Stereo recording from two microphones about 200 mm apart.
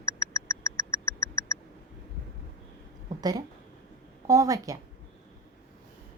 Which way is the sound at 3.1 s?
20° right (ahead or behind).